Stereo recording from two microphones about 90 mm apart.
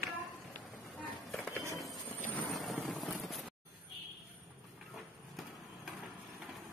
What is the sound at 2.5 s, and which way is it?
Vehicle, centre (ahead or behind).